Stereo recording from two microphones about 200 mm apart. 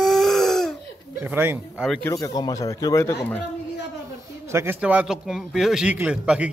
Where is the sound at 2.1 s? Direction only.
20° left (ahead or behind).